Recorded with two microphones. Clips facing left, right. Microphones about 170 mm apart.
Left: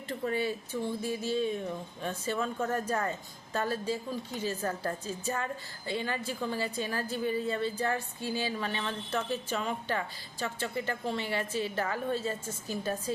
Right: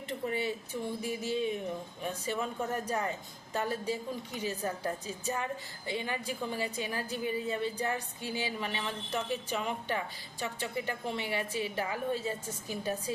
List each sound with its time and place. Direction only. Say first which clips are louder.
0.1 s a woman's voice: left 2 dB; 20° right (ahead or behind)